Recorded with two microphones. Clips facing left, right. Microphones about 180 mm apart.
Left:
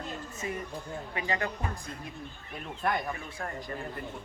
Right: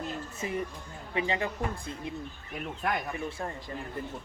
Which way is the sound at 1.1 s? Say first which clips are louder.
Right 3 dB; 25° right (ahead or behind).